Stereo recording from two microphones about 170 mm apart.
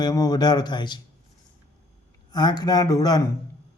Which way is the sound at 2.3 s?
25° left (ahead or behind).